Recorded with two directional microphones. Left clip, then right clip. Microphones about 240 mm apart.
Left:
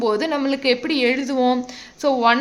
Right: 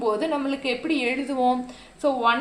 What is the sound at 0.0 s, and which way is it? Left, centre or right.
A woman's voice, left.